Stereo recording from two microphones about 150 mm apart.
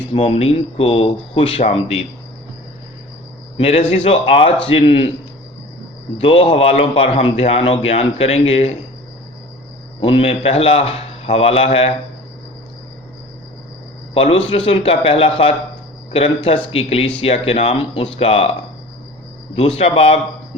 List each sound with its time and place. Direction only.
0.1 s speech: 40° left (ahead or behind)
3.6 s speech: 40° left (ahead or behind)
6.1 s speech: 40° left (ahead or behind)
10.0 s speech: 35° left (ahead or behind)
14.1 s speech: 40° left (ahead or behind)
19.5 s speech: 40° left (ahead or behind)